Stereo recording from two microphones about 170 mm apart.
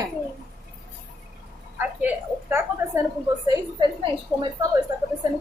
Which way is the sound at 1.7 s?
15° right (ahead or behind).